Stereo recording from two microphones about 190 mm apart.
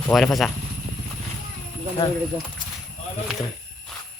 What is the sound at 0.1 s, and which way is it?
Speech, centre (ahead or behind).